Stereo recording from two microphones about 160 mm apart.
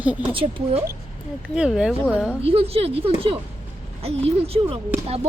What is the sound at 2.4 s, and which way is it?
A woman's voice, 40° right (ahead or behind).